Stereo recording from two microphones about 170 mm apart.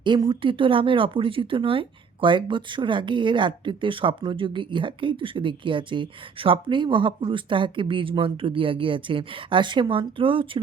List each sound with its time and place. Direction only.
0.0 s speech: 25° right (ahead or behind)